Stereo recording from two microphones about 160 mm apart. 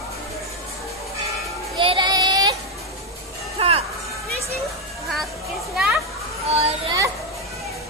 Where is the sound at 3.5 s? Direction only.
40° right (ahead or behind).